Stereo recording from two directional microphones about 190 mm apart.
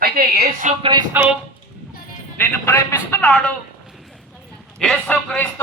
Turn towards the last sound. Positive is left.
turn(degrees=5)  # may be behind; listen again after turning